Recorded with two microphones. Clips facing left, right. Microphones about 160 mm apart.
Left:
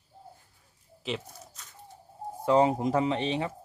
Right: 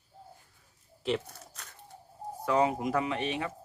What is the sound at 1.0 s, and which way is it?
Speech, centre (ahead or behind).